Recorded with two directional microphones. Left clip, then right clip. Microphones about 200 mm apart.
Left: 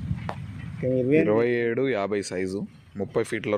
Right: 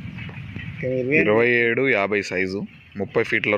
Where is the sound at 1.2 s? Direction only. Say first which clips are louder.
Right 5 dB; centre (ahead or behind).